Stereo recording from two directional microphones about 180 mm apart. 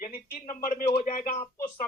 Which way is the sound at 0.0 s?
55° left (ahead or behind).